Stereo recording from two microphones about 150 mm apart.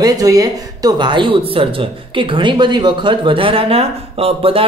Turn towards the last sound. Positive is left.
turn(degrees=-40)  # may be behind; listen again after turning